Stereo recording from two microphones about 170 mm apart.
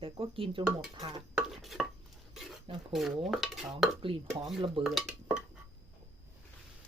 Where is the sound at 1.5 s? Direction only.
Centre (ahead or behind).